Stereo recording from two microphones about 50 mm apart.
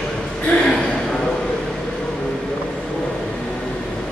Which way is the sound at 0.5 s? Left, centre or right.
Centre.